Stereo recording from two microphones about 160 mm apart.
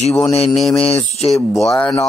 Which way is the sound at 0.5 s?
Centre (ahead or behind).